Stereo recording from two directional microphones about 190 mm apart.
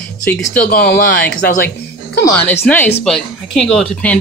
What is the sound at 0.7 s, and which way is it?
Speech, 55° left (ahead or behind).